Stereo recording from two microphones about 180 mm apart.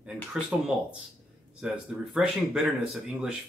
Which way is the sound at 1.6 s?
Centre (ahead or behind).